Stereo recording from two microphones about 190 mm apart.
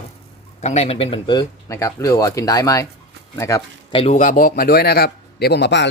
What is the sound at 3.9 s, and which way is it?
A man's voice, 35° left (ahead or behind).